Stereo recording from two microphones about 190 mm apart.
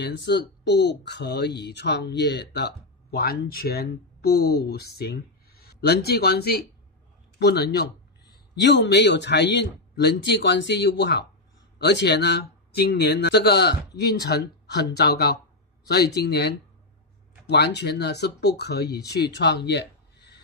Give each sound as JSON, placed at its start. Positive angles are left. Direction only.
{"t": 0.0, "sound": "speech", "side_deg": 65}
{"t": 18.9, "sound": "speech", "side_deg": 20}
{"t": 19.3, "sound": "speech", "side_deg": 60}